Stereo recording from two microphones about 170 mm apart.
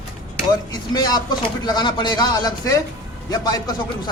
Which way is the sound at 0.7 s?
25° left (ahead or behind).